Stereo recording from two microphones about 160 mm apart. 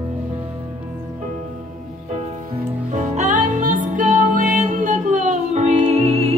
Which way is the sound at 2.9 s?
50° right (ahead or behind).